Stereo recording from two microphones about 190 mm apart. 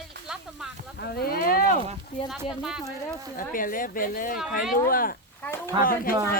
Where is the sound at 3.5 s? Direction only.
45° left (ahead or behind).